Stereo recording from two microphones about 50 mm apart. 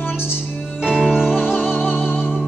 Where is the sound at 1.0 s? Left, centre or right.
Centre.